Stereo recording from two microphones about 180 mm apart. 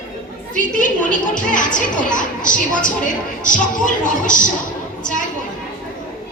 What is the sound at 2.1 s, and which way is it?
A woman's voice, 45° left (ahead or behind).